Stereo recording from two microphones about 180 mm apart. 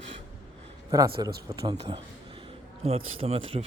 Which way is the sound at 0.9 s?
20° right (ahead or behind).